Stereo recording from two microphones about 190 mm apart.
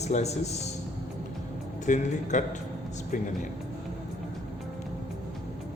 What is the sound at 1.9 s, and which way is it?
Speech, 40° left (ahead or behind).